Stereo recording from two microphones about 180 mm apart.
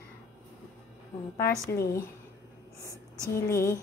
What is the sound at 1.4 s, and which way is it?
Speech, 15° left (ahead or behind).